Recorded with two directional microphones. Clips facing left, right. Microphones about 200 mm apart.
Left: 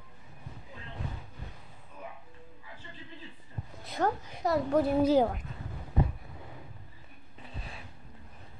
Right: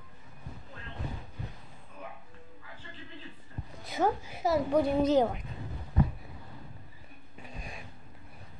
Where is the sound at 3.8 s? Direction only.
5° right (ahead or behind).